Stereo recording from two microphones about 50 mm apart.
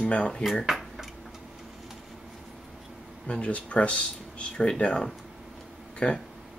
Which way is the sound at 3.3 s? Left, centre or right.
Left.